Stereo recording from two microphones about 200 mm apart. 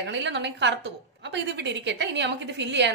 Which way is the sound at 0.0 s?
60° right (ahead or behind).